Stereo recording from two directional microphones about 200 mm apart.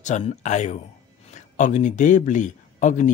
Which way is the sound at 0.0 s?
35° left (ahead or behind).